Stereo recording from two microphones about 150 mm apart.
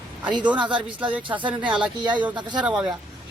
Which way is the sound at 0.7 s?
10° right (ahead or behind).